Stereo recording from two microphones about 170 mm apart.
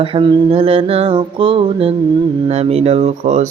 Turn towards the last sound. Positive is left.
turn(degrees=-40)  # may be behind; listen again after turning